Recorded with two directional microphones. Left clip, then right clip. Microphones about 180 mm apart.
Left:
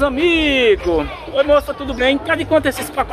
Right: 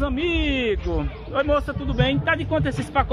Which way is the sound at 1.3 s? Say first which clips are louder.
Left 8 dB; 15° right (ahead or behind).